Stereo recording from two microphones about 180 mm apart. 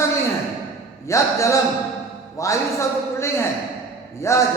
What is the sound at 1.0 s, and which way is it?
A man's voice, 15° left (ahead or behind).